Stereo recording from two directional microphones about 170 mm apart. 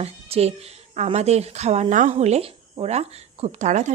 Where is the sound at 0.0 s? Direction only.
35° right (ahead or behind).